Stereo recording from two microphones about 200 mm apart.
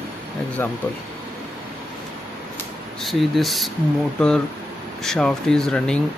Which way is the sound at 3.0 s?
Centre (ahead or behind).